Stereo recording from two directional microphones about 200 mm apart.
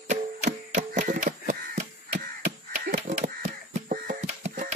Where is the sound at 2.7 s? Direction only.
40° right (ahead or behind).